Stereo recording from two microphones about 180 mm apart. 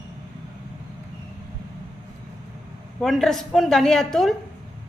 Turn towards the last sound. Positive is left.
turn(degrees=0)  # may be behind; listen again after turning